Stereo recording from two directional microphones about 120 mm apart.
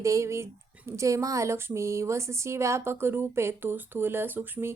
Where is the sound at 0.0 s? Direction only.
25° right (ahead or behind).